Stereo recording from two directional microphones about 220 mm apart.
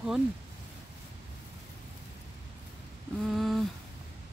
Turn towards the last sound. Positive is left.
turn(degrees=0)  # may be behind; listen again after turning